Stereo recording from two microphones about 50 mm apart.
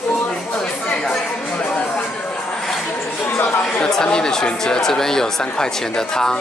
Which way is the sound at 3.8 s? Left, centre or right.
Centre.